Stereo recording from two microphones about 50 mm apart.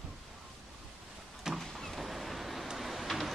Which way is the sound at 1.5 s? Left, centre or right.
Centre.